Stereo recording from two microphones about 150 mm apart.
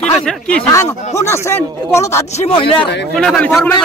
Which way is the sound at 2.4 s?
40° left (ahead or behind).